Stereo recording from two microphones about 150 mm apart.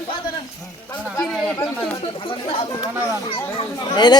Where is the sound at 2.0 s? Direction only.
35° left (ahead or behind).